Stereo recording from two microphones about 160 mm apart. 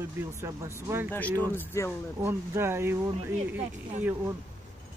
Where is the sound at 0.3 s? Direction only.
15° right (ahead or behind).